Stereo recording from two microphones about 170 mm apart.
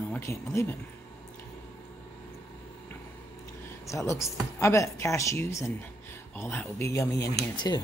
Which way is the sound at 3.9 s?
15° left (ahead or behind).